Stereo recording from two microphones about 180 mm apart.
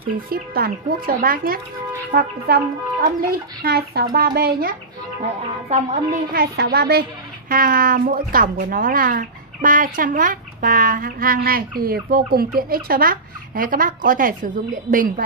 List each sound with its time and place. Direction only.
0.3 s a woman's voice: 55° right (ahead or behind)
3.6 s speech: 60° right (ahead or behind)
5.2 s speech: 40° right (ahead or behind)
6.3 s a woman's voice: 60° right (ahead or behind)